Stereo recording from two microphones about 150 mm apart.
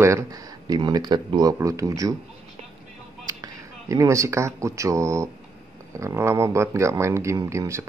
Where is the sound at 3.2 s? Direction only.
20° right (ahead or behind).